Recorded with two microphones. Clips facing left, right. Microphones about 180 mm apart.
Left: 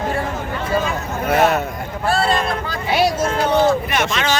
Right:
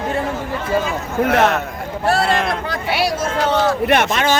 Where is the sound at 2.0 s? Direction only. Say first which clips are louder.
Right 1 dB; 70° right (ahead or behind).